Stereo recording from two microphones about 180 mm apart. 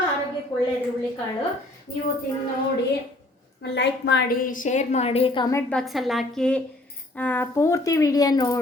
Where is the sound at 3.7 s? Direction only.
75° left (ahead or behind).